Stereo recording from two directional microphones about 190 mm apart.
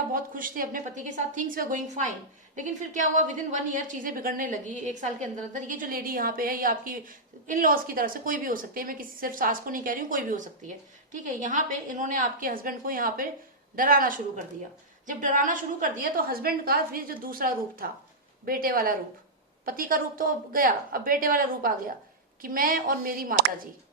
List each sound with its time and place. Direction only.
0.1 s a woman's voice: 45° right (ahead or behind)